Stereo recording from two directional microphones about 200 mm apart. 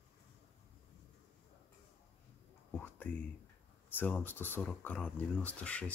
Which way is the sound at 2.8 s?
10° left (ahead or behind).